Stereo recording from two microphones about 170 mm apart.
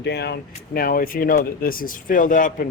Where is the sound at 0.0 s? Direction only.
85° left.